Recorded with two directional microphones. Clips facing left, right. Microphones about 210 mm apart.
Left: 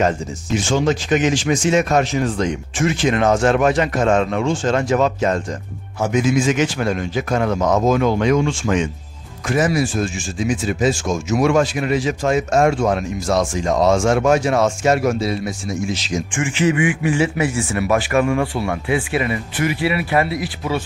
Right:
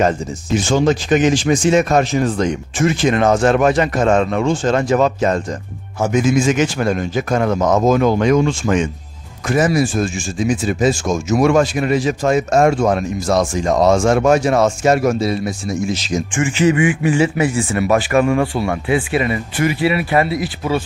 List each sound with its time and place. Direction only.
0.6 s speech: 40° right (ahead or behind)
16.5 s speech: 30° right (ahead or behind)